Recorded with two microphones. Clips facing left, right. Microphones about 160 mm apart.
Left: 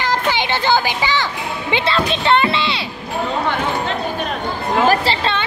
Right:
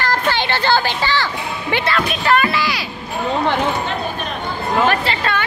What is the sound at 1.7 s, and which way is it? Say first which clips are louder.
A woman's voice: left 1 dB; 25° left (ahead or behind).